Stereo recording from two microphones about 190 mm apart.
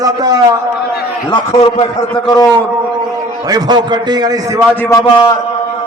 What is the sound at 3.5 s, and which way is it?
A man's voice, 20° right (ahead or behind).